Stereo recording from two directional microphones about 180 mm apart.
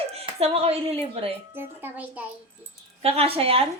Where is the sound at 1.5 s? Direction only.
10° right (ahead or behind).